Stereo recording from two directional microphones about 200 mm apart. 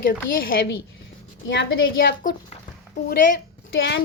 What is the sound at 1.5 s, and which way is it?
Speech, 60° left (ahead or behind).